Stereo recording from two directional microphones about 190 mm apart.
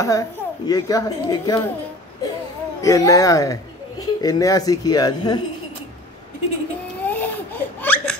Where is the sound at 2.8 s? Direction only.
15° left (ahead or behind).